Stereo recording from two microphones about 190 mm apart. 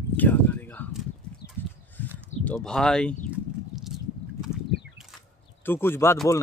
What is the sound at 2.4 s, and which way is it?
Speech, 5° left (ahead or behind).